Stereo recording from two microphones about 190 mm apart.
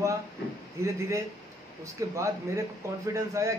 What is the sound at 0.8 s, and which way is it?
A man's voice, 15° right (ahead or behind).